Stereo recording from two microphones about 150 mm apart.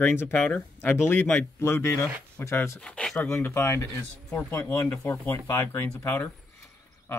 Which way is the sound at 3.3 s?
20° left (ahead or behind).